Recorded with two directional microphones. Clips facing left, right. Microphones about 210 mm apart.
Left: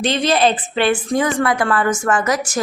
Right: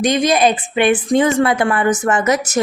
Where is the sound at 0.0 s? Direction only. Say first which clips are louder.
Right 2 dB; 15° right (ahead or behind).